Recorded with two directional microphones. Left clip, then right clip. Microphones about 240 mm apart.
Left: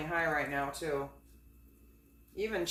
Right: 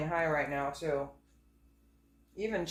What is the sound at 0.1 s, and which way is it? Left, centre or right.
Speech, centre.